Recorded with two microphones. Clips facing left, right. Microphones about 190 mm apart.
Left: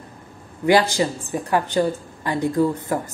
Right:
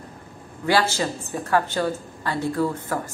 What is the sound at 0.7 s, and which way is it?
A woman's voice, 15° left (ahead or behind).